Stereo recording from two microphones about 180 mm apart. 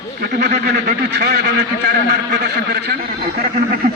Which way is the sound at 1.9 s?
60° right (ahead or behind).